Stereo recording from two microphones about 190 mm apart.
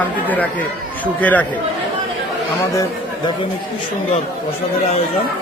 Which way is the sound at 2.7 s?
20° left (ahead or behind).